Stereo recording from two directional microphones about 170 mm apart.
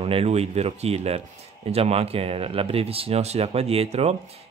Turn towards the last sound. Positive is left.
turn(degrees=-40)  # may be behind; listen again after turning